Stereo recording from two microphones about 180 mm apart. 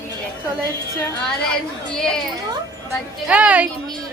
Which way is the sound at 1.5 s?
5° left (ahead or behind).